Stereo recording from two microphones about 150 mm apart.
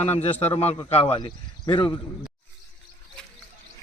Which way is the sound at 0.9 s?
45° left (ahead or behind).